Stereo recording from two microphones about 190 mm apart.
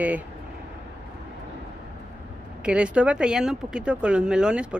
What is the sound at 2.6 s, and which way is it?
Speech, 5° right (ahead or behind).